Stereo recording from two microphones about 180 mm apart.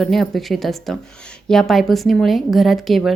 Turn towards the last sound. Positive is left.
turn(degrees=0)  # may be behind; listen again after turning